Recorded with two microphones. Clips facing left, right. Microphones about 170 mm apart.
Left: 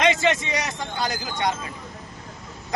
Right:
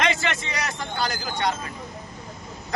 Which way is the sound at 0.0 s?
20° left (ahead or behind).